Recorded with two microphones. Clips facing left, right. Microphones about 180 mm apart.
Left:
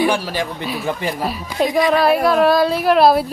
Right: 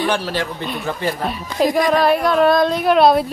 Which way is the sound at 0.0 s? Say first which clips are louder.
Left 2 dB; 10° left (ahead or behind).